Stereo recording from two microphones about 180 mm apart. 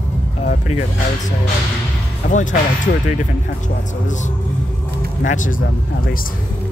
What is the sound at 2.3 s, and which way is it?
Speech, 45° left (ahead or behind).